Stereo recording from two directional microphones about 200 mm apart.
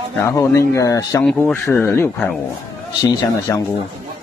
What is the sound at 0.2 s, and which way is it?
Speech, 15° left (ahead or behind).